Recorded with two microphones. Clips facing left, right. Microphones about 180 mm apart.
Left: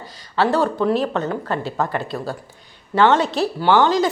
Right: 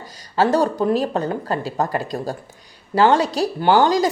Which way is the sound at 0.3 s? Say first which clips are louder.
Right 1 dB; 40° right (ahead or behind).